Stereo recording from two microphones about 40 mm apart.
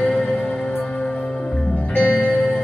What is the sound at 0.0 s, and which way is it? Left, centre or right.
Music, left.